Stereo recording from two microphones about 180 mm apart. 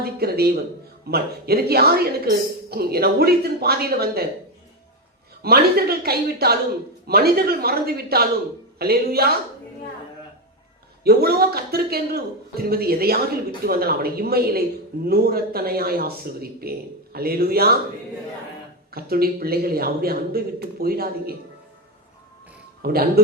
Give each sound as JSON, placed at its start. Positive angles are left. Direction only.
{"t": 0.0, "sound": "a woman's voice", "side_deg": -60}
{"t": 5.4, "sound": "a woman's voice", "side_deg": -60}
{"t": 11.0, "sound": "a woman's voice", "side_deg": -60}
{"t": 18.9, "sound": "a woman's voice", "side_deg": -60}
{"t": 22.8, "sound": "a woman's voice", "side_deg": -60}